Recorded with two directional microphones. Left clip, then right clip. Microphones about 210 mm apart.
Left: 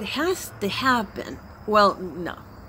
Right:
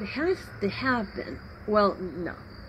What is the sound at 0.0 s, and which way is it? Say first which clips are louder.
Speech: left 3 dB; 35° left (ahead or behind).